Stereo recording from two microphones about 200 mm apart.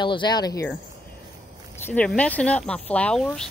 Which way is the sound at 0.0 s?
25° left (ahead or behind).